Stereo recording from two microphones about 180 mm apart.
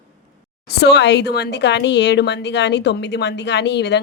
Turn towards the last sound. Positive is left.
turn(degrees=70)  # may be behind; listen again after turning